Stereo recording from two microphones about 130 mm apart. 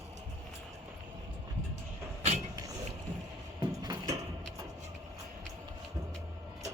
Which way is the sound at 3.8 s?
30° right (ahead or behind).